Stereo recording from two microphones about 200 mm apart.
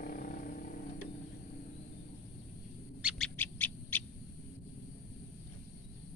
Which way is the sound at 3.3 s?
10° left (ahead or behind).